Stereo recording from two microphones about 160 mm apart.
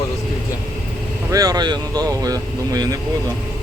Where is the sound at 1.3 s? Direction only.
25° right (ahead or behind).